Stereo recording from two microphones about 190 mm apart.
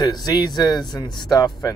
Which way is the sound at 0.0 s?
20° left (ahead or behind).